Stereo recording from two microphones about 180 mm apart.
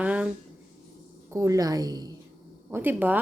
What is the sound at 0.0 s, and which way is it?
Speech, 10° right (ahead or behind).